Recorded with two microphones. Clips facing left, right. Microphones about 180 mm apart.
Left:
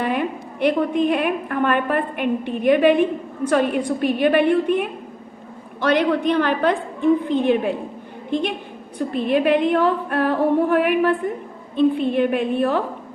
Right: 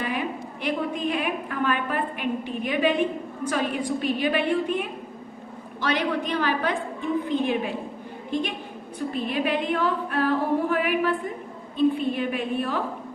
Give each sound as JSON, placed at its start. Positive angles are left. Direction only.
{"t": 0.0, "sound": "a woman's voice", "side_deg": 60}
{"t": 9.0, "sound": "a woman's voice", "side_deg": 60}